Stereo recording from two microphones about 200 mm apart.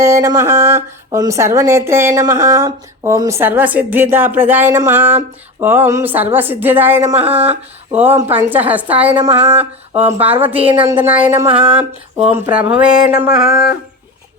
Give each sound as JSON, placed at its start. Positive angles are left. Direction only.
{"t": 0.0, "sound": "speech", "side_deg": -15}
{"t": 13.5, "sound": "music", "side_deg": 50}